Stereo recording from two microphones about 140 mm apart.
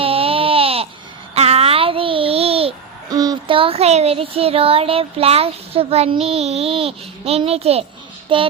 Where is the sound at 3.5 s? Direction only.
40° right (ahead or behind).